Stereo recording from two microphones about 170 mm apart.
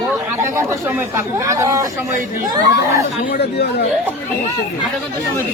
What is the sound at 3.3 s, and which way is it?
Speech, 75° left (ahead or behind).